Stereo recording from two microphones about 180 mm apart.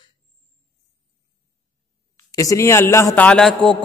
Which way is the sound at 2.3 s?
20° left (ahead or behind).